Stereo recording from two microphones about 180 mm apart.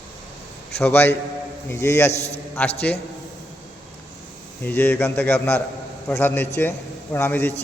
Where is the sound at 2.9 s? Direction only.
10° left (ahead or behind).